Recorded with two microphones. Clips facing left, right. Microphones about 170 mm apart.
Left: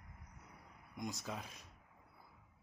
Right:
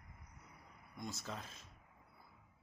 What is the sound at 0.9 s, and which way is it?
Speech, 15° left (ahead or behind).